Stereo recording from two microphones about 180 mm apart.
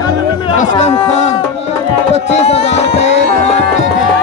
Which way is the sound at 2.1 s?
35° left (ahead or behind).